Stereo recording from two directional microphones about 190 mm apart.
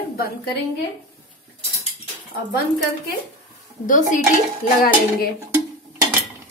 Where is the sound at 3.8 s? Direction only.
45° left (ahead or behind).